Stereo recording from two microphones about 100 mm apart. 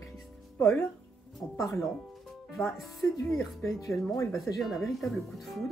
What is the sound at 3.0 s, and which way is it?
Speech, 30° left (ahead or behind).